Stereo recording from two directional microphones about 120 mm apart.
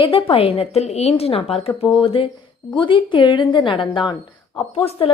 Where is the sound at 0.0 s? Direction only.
50° left (ahead or behind).